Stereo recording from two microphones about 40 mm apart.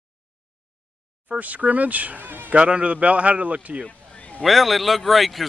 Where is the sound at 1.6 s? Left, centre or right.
Right.